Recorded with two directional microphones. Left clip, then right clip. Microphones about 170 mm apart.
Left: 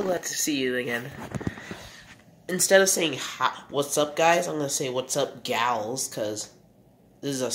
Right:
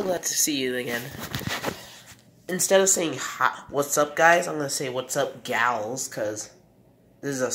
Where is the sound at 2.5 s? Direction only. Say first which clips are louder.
Left 1 dB; 5° left (ahead or behind).